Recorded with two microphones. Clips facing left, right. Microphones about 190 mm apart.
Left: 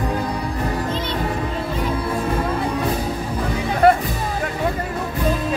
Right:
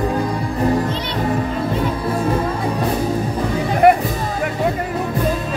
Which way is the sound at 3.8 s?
15° right (ahead or behind).